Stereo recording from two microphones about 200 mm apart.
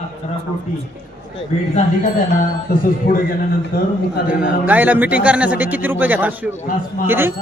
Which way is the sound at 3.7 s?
45° left (ahead or behind).